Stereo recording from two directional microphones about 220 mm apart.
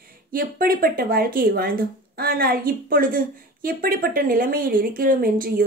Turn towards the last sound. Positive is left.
turn(degrees=-40)  # may be behind; listen again after turning